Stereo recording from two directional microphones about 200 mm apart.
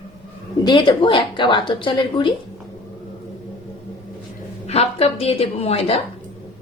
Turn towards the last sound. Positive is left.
turn(degrees=30)  # may be behind; listen again after turning